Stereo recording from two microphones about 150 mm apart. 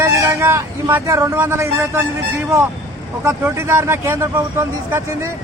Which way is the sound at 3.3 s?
15° right (ahead or behind).